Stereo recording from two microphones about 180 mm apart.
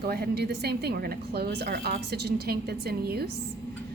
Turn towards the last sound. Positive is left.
turn(degrees=-60)  # may be behind; listen again after turning